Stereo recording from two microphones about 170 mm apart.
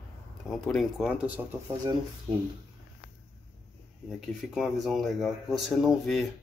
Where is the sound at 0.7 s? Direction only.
Centre (ahead or behind).